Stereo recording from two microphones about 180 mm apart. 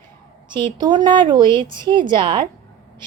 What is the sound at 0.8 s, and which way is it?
Speech, 25° right (ahead or behind).